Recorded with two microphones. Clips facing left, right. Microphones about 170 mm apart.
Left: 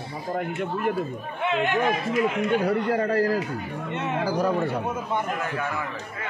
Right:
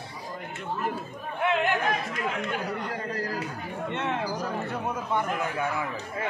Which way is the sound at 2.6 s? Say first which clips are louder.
Left 9 dB; 60° left (ahead or behind).